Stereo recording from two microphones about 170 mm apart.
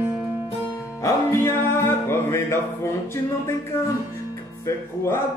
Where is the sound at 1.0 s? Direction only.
15° left (ahead or behind).